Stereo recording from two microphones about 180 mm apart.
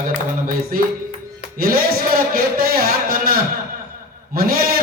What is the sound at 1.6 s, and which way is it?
A man's voice, 55° right (ahead or behind).